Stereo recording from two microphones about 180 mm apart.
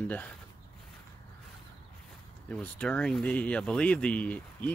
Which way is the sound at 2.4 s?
5° left (ahead or behind).